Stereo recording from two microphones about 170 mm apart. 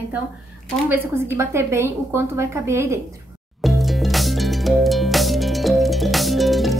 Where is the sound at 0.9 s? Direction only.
15° right (ahead or behind).